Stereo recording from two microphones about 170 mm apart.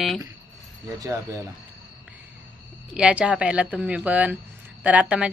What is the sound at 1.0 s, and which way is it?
Speech, 20° right (ahead or behind).